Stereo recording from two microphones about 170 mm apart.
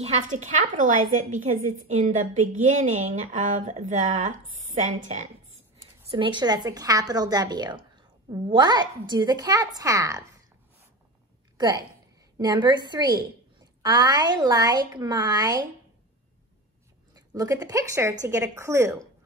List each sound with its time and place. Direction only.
0.0 s a woman's voice: 40° right (ahead or behind)
6.0 s a woman's voice: 30° right (ahead or behind)
11.5 s a sound: 25° right (ahead or behind)
12.4 s a woman's voice: 25° right (ahead or behind)
17.1 s a woman's voice: 20° right (ahead or behind)